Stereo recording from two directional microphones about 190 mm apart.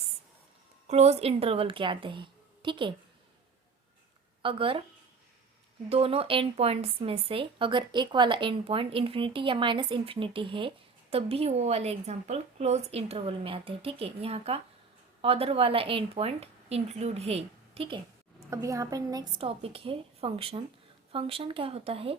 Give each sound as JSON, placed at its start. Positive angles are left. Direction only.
{"t": 0.9, "sound": "speech", "side_deg": -35}
{"t": 4.4, "sound": "speech", "side_deg": -30}
{"t": 5.9, "sound": "speech", "side_deg": -30}